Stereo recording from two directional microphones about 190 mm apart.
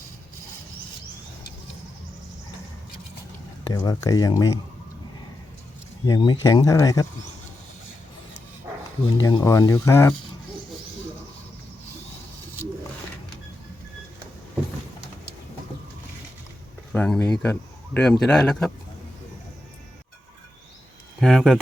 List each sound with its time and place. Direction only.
3.6 s speech: 20° left (ahead or behind)
6.1 s speech: 20° left (ahead or behind)
9.1 s speech: 20° left (ahead or behind)
16.9 s speech: 5° left (ahead or behind)
21.2 s speech: centre (ahead or behind)